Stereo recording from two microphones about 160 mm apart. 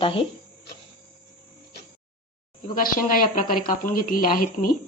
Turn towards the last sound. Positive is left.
turn(degrees=60)  # may be behind; listen again after turning